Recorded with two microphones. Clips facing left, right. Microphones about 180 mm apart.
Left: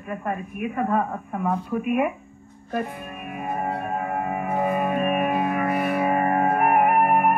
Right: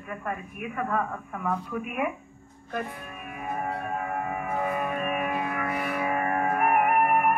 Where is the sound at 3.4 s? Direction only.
30° left (ahead or behind).